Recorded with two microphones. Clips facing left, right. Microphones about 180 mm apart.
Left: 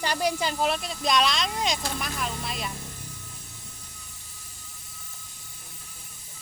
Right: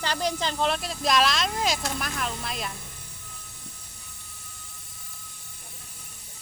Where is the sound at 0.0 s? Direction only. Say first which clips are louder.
Left 1 dB; 10° left (ahead or behind).